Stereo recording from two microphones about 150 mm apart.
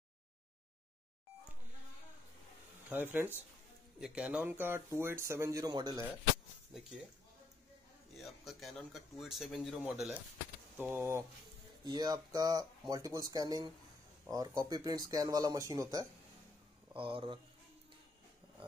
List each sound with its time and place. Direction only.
2.9 s speech: 10° right (ahead or behind); by 6.0 s 30° right (ahead or behind)
8.2 s speech: centre (ahead or behind)
10.8 s speech: 15° right (ahead or behind)
11.8 s speech: 30° right (ahead or behind)
16.9 s speech: 35° right (ahead or behind)